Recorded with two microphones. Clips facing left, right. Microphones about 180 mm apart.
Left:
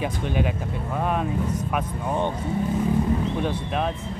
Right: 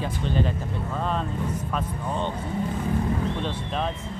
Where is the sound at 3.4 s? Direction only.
10° left (ahead or behind).